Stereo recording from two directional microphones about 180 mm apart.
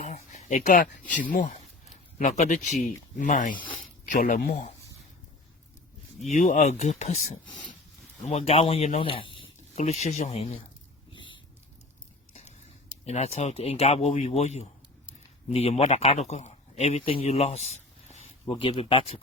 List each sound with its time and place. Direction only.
0.0 s a sound: 40° left (ahead or behind)
1.3 s speech: 45° left (ahead or behind)
6.3 s speech: 45° left (ahead or behind)
11.1 s a sound: 25° left (ahead or behind)
12.3 s tick-tock: 35° left (ahead or behind)
13.1 s speech: 35° left (ahead or behind)